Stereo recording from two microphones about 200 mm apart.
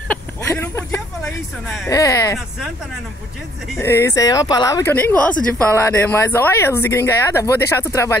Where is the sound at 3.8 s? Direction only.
15° left (ahead or behind).